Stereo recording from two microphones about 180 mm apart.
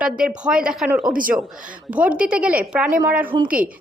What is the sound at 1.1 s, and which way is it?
Speech, 50° right (ahead or behind).